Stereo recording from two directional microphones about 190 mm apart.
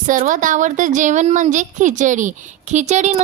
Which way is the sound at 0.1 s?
40° right (ahead or behind).